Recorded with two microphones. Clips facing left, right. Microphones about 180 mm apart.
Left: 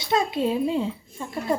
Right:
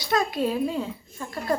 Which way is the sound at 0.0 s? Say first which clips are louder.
Left 1 dB; 25° left (ahead or behind).